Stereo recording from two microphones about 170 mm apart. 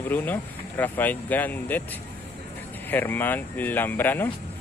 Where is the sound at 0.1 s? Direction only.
10° left (ahead or behind).